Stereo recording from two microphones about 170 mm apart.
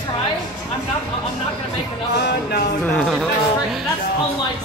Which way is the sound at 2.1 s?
70° left (ahead or behind).